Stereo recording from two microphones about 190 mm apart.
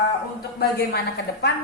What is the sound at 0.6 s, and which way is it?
Speech, 55° left (ahead or behind).